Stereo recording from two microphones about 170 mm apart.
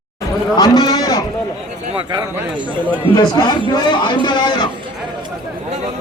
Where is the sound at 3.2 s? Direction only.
25° left (ahead or behind).